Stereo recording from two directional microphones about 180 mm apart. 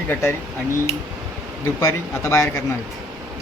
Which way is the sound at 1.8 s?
15° left (ahead or behind).